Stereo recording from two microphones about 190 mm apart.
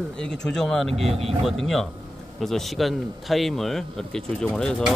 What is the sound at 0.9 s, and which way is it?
Speech, 30° right (ahead or behind).